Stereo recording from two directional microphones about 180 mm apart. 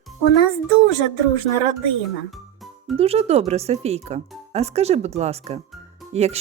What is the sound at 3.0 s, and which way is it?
Speech, 35° right (ahead or behind).